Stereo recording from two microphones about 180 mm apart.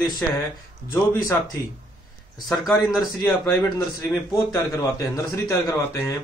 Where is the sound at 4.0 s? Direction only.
15° left (ahead or behind).